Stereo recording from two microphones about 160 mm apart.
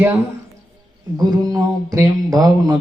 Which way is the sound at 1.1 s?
25° right (ahead or behind).